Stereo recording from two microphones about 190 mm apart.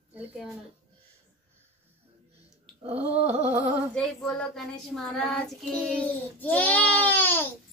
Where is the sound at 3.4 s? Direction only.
10° right (ahead or behind).